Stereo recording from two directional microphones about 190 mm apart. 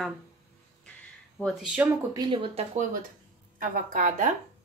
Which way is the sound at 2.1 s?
25° right (ahead or behind).